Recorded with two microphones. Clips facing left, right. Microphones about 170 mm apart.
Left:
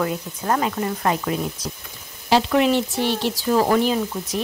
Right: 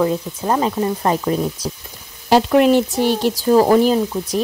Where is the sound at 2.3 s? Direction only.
45° right (ahead or behind).